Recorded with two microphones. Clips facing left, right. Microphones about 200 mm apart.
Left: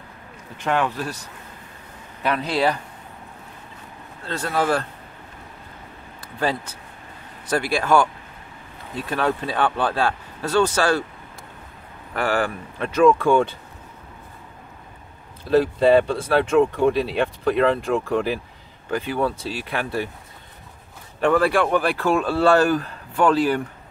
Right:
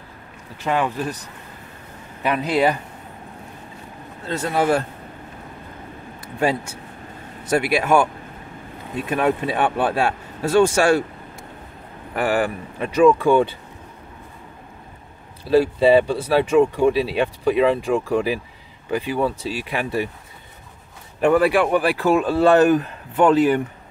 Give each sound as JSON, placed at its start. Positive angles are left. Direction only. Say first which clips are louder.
{"t": 0.7, "sound": "speech", "louder": "right 1 dB", "side_deg": -10}
{"t": 2.2, "sound": "speech", "louder": "right 2 dB", "side_deg": -10}
{"t": 4.4, "sound": "speech", "louder": "right 2 dB", "side_deg": -15}
{"t": 7.5, "sound": "speech", "louder": "right 2 dB", "side_deg": -10}
{"t": 10.0, "sound": "speech", "louder": "right 2 dB", "side_deg": -25}
{"t": 12.1, "sound": "speech", "louder": "right 2 dB", "side_deg": -10}
{"t": 15.4, "sound": "speech", "louder": "right 1 dB", "side_deg": -5}
{"t": 21.2, "sound": "speech", "louder": "right 2 dB", "side_deg": -10}